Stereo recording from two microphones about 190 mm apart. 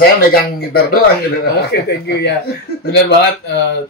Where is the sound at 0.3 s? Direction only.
55° left (ahead or behind).